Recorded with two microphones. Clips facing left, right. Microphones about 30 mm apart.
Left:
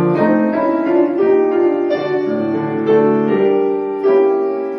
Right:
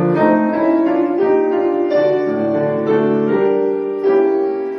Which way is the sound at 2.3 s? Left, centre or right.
Left.